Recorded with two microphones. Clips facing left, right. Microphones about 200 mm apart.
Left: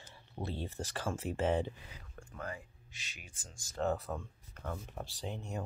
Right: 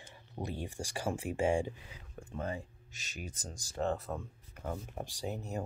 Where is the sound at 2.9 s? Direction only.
45° right (ahead or behind).